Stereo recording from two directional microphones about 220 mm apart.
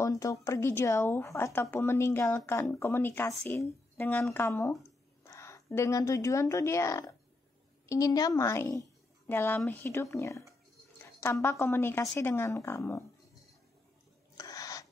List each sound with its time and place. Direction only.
0.0 s a woman's voice: 15° left (ahead or behind)
14.3 s owl: 15° left (ahead or behind)